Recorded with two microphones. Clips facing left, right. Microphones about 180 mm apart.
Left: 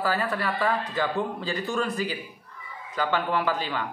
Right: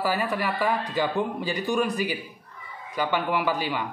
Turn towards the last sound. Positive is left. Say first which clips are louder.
# right 1 dB
turn(degrees=-15)  # may be behind; listen again after turning